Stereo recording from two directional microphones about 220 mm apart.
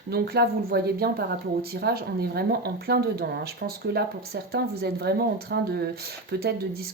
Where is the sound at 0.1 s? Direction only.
45° right (ahead or behind).